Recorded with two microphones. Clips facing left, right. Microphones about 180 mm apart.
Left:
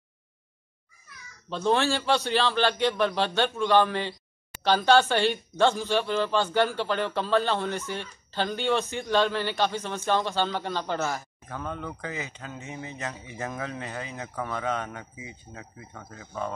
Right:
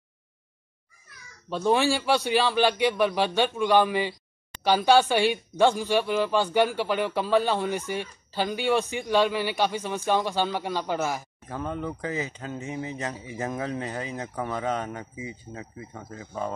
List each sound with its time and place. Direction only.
1.5 s speech: 10° right (ahead or behind)
12.4 s speech: 25° right (ahead or behind)
13.6 s speech: 35° right (ahead or behind)